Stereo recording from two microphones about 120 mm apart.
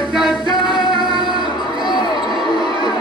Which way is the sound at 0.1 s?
Centre (ahead or behind).